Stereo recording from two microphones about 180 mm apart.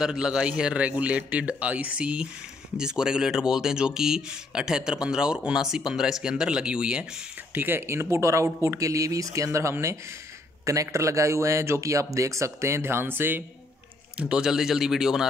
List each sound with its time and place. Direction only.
0.0 s a man's voice: 5° right (ahead or behind)